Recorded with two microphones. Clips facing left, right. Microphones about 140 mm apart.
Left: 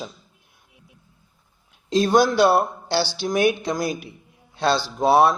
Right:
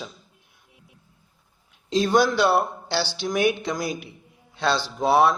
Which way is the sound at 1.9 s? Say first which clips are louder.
Left 2 dB; 40° left (ahead or behind).